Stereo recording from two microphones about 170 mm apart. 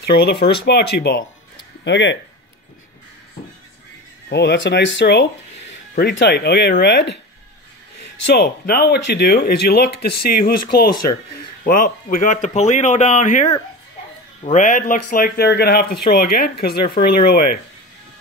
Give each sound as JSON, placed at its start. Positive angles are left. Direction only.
{"t": 0.0, "sound": "speech", "side_deg": 70}
{"t": 1.9, "sound": "speech", "side_deg": 90}
{"t": 4.3, "sound": "speech", "side_deg": 75}